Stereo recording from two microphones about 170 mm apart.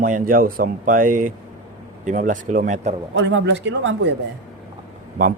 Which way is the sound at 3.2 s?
90° right.